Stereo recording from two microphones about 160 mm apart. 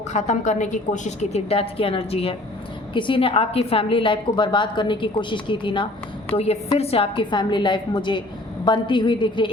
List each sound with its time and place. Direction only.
0.1 s a woman's voice: 50° left (ahead or behind); by 9.5 s 30° left (ahead or behind)